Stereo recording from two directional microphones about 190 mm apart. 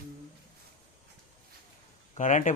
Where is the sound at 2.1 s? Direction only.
40° left (ahead or behind).